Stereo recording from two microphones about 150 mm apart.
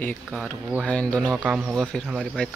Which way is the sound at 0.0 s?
10° left (ahead or behind).